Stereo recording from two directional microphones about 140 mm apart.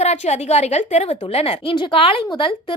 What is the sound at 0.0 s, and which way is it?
A woman's voice, 50° left (ahead or behind).